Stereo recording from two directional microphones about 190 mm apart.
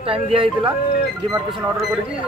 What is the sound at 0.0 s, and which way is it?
Speech, 30° right (ahead or behind).